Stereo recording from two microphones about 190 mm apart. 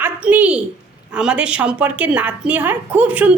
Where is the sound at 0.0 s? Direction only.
10° right (ahead or behind).